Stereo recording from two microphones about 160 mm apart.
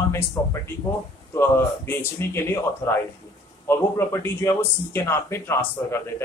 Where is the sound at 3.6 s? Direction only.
15° left (ahead or behind).